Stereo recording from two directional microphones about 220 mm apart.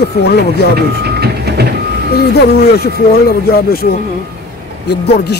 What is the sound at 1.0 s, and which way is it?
Vehicle, 45° right (ahead or behind).